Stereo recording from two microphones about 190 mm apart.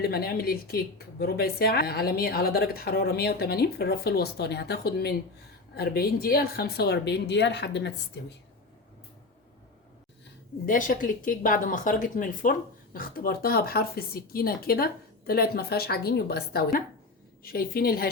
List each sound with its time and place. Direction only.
0.0 s a woman's voice: 55° left (ahead or behind)
10.7 s a woman's voice: 45° left (ahead or behind)